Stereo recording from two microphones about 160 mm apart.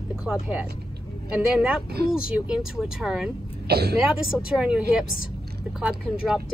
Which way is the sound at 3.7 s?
85° right.